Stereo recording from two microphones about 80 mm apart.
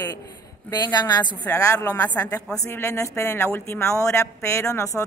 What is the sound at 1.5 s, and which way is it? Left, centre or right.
Speech, left.